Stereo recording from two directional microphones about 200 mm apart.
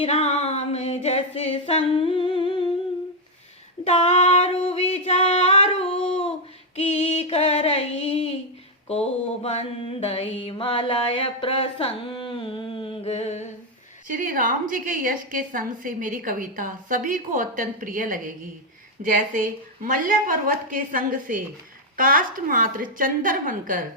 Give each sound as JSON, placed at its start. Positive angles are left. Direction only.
{"t": 0.0, "sound": "a sound", "side_deg": 30}
{"t": 3.8, "sound": "female singing", "side_deg": 30}
{"t": 4.7, "sound": "singing", "side_deg": 30}
{"t": 6.7, "sound": "a sound", "side_deg": 30}
{"t": 8.9, "sound": "mantra", "side_deg": 30}
{"t": 14.1, "sound": "a woman's voice", "side_deg": -45}